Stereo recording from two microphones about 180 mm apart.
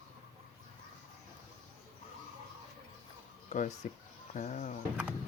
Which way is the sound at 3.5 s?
45° left (ahead or behind).